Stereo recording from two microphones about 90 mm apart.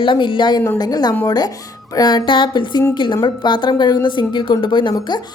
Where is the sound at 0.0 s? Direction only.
70° left (ahead or behind).